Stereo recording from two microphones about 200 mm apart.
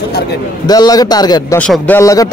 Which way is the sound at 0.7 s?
20° left (ahead or behind).